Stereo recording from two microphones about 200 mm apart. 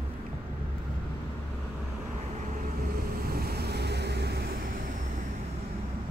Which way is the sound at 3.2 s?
50° right (ahead or behind).